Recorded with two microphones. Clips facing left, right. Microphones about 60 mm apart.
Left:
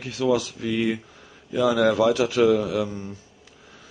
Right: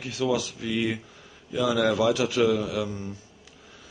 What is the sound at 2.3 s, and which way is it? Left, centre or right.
Speech, centre.